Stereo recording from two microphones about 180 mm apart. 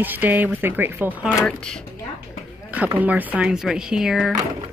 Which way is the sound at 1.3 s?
10° left (ahead or behind).